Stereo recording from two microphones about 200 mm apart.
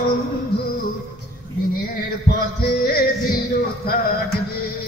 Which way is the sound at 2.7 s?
50° left (ahead or behind).